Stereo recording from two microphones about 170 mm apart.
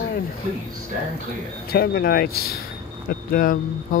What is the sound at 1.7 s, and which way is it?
Speech, 65° left (ahead or behind).